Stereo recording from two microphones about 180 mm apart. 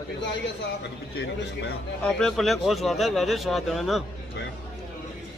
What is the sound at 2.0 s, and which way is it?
Speech, 5° left (ahead or behind).